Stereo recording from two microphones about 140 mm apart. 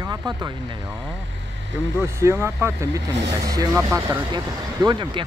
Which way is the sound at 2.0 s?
20° right (ahead or behind).